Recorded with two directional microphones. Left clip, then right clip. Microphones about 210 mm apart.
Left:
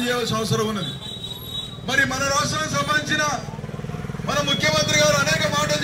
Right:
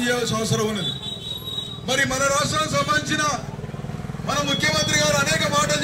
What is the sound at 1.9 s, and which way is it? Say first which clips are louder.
A man's voice: even; 30° right (ahead or behind).